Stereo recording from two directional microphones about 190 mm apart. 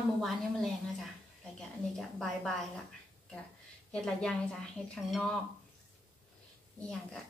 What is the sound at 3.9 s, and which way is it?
A woman's voice, 5° left (ahead or behind).